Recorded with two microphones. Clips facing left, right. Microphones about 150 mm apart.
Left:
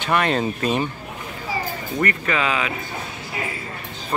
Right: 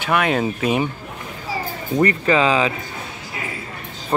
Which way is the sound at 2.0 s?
30° right (ahead or behind).